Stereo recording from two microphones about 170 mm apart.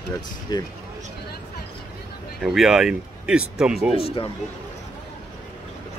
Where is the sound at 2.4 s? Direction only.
Centre (ahead or behind).